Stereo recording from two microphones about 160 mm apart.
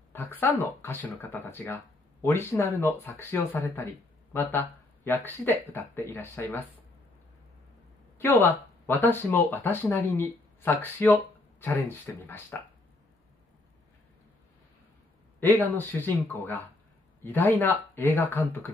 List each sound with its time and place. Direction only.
0.1 s speech: 10° left (ahead or behind)
8.2 s speech: 15° left (ahead or behind)
15.4 s speech: 10° left (ahead or behind)